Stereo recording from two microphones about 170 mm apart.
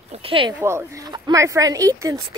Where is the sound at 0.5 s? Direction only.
15° right (ahead or behind).